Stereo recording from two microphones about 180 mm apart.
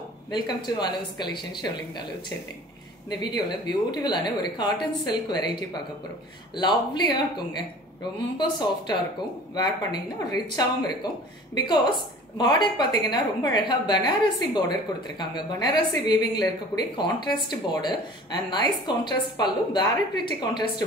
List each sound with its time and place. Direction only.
0.3 s a woman's voice: 25° left (ahead or behind)